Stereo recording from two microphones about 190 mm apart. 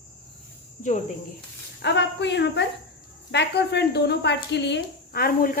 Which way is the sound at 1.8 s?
65° left (ahead or behind).